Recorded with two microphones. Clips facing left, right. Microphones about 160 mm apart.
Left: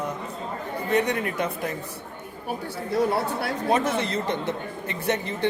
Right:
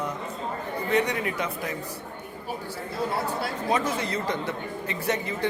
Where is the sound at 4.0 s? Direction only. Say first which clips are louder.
Left 2 dB; 25° left (ahead or behind).